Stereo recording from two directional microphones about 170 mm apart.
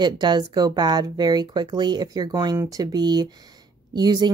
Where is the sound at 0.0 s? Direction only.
25° right (ahead or behind).